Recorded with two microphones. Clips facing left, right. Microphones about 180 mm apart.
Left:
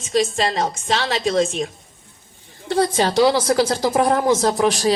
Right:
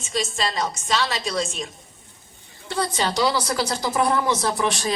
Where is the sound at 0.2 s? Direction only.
55° left (ahead or behind).